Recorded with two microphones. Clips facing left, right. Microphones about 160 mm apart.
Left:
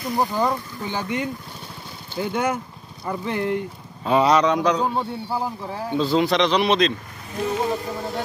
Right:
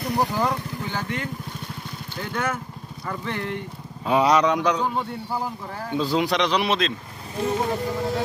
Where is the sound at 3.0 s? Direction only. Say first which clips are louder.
Left 5 dB; 5° left (ahead or behind).